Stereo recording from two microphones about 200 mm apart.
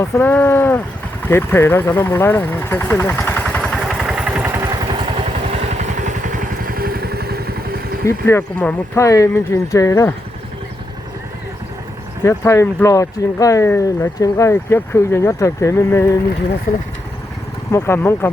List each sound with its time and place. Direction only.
0.0 s speech: 10° left (ahead or behind); by 4.6 s 10° right (ahead or behind)
5.5 s vehicle: 35° right (ahead or behind)
8.0 s speech: 10° left (ahead or behind)
12.2 s speech: 15° left (ahead or behind)
17.7 s speech: 15° left (ahead or behind)